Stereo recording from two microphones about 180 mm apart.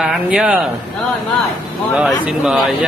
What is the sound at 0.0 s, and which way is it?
Speech, 5° right (ahead or behind).